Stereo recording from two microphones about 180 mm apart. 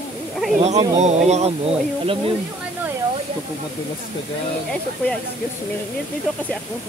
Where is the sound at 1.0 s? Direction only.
40° right (ahead or behind).